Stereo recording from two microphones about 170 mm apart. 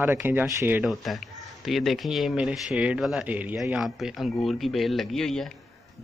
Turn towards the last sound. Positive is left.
turn(degrees=5)  # may be behind; listen again after turning